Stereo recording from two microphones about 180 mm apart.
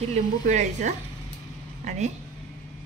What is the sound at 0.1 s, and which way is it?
Speech, 40° right (ahead or behind).